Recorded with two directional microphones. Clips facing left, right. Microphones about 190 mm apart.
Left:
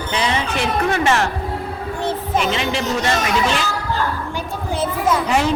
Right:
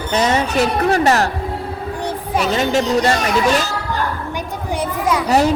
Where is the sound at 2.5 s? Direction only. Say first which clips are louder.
Right 5 dB; 45° right (ahead or behind).